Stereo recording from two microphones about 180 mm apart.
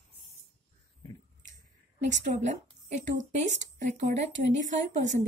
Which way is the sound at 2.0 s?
45° right (ahead or behind).